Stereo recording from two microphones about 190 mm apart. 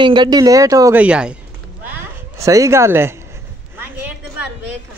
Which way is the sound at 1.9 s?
15° right (ahead or behind).